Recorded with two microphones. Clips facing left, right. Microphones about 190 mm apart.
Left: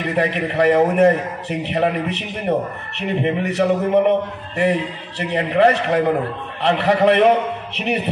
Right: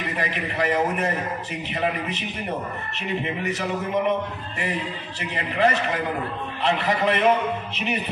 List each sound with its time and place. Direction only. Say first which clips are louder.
0.0 s a man's voice: left 8 dB; 60° left (ahead or behind)